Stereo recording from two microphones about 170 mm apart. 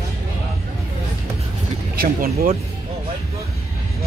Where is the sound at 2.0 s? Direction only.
60° right (ahead or behind).